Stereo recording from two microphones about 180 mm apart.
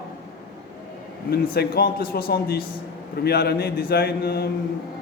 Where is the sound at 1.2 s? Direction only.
60° left (ahead or behind).